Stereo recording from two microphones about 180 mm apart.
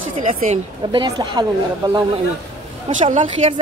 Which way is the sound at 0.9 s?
25° right (ahead or behind).